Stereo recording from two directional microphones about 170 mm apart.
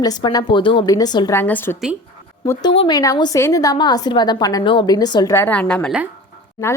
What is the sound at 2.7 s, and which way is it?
A woman's voice, 30° left (ahead or behind).